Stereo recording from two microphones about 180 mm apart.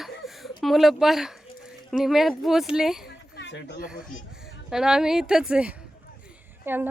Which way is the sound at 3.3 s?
70° left (ahead or behind).